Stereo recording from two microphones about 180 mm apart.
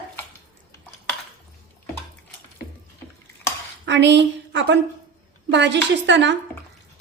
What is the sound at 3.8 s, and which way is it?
A woman's voice, 80° right.